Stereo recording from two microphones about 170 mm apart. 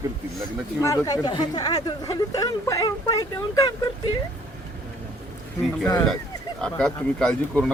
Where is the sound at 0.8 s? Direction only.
20° left (ahead or behind).